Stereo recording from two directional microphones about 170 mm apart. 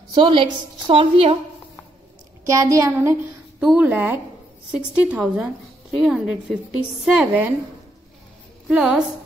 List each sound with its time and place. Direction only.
0.1 s a woman's voice: 30° right (ahead or behind)
2.4 s a woman's voice: 20° right (ahead or behind)
8.6 s a woman's voice: centre (ahead or behind)